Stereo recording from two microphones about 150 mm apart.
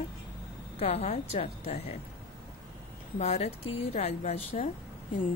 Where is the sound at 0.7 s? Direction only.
45° left (ahead or behind).